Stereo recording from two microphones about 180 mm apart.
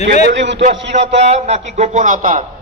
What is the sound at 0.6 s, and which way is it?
A man's voice, 40° right (ahead or behind).